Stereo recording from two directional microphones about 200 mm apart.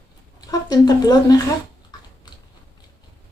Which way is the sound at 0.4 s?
20° left (ahead or behind).